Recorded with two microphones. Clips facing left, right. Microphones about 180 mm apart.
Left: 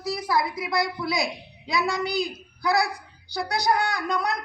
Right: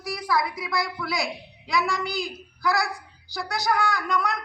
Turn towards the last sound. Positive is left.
turn(degrees=20)  # may be behind; listen again after turning